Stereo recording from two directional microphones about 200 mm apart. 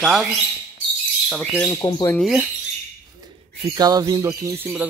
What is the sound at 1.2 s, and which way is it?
Speech, centre (ahead or behind).